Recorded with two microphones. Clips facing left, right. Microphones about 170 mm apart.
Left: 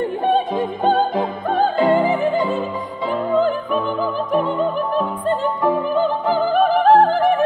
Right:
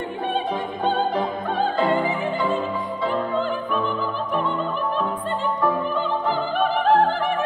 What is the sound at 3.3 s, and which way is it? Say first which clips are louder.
Opera: left 6 dB; 40° left (ahead or behind).